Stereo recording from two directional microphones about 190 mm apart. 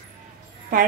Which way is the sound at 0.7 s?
45° right (ahead or behind).